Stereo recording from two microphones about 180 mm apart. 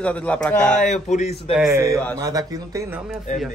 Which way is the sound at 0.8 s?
40° left (ahead or behind).